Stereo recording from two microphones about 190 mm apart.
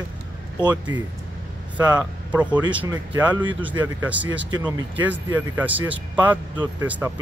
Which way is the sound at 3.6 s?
10° right (ahead or behind).